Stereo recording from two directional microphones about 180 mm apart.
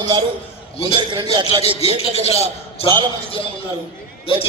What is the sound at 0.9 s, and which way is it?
Speech, 25° right (ahead or behind).